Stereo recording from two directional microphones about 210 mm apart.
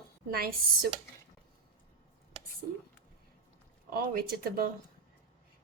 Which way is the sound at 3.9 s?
45° right (ahead or behind).